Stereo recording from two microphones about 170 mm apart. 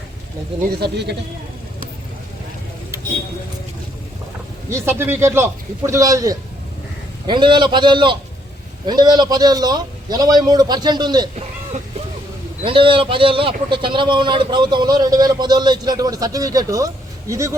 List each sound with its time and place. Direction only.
0.7 s speech: 75° right (ahead or behind)
4.7 s a man's voice: 15° right (ahead or behind)
11.3 s a sound: 40° right (ahead or behind)
12.6 s a man's voice: 30° right (ahead or behind)